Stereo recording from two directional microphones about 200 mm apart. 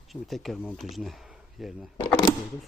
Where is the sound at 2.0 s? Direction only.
20° left (ahead or behind).